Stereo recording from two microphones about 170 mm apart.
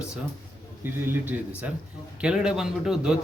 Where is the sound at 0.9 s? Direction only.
15° right (ahead or behind).